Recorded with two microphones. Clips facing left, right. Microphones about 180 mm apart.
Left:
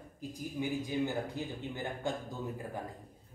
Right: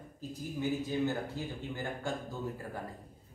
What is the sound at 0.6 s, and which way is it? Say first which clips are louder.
A man's voice: right 1 dB; 15° left (ahead or behind).